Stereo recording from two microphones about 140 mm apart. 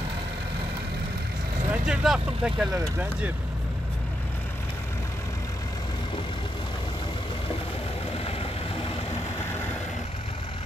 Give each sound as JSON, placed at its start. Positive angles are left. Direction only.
{"t": 1.7, "sound": "speech", "side_deg": -5}
{"t": 2.7, "sound": "speech", "side_deg": -20}
{"t": 8.2, "sound": "vehicle", "side_deg": 45}